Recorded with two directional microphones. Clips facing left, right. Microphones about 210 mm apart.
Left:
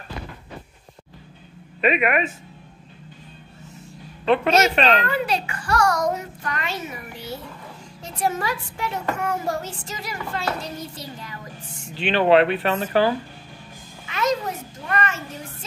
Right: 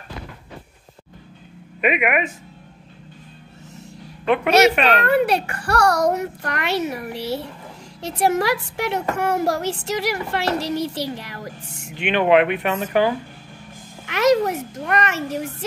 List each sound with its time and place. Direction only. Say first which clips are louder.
1.8 s speech: even; 15° right (ahead or behind)
4.5 s speech: right 6 dB; 70° right (ahead or behind)
11.9 s speech: even; 15° right (ahead or behind)
14.0 s a child's voice: right 7 dB; 75° right (ahead or behind)